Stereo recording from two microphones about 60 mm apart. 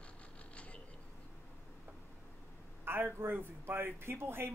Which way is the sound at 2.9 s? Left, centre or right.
Right.